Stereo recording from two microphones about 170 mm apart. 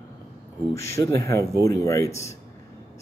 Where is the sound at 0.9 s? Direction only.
20° left (ahead or behind).